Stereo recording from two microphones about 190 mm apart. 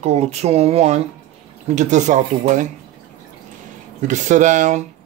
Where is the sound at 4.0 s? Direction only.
40° right (ahead or behind).